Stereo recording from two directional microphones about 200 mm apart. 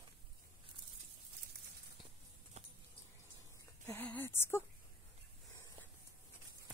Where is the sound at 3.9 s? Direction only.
10° left (ahead or behind).